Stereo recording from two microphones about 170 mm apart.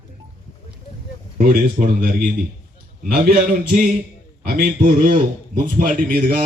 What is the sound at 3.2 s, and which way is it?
Speech, 55° right (ahead or behind).